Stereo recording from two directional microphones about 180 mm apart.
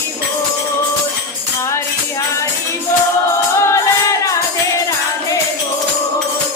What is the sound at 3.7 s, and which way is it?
Music, 15° left (ahead or behind).